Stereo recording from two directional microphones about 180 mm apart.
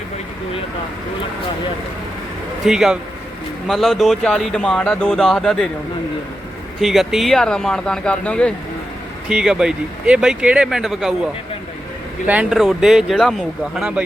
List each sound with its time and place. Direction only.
2.6 s speech: 5° right (ahead or behind)
6.8 s speech: centre (ahead or behind)
12.3 s speech: 5° right (ahead or behind)